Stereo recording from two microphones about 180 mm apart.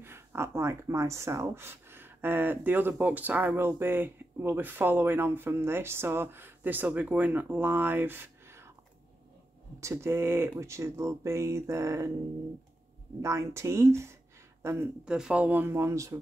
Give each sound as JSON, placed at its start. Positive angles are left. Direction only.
{"t": 0.0, "sound": "speech", "side_deg": -15}
{"t": 9.8, "sound": "speech", "side_deg": -15}
{"t": 13.2, "sound": "speech", "side_deg": -15}